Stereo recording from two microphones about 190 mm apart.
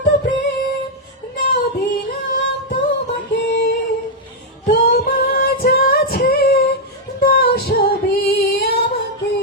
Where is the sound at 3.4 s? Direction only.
65° left (ahead or behind).